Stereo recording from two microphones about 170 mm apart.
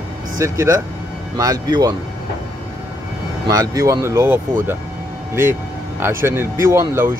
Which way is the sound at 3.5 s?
20° right (ahead or behind).